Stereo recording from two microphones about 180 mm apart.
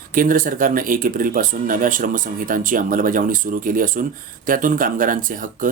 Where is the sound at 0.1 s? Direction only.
50° right (ahead or behind).